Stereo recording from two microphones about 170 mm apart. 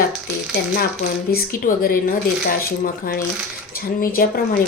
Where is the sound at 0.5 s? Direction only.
60° left (ahead or behind).